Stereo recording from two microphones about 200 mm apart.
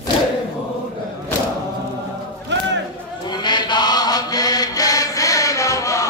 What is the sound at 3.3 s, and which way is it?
Chant, 20° left (ahead or behind).